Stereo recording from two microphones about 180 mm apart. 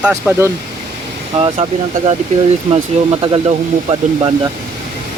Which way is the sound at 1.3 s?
30° right (ahead or behind).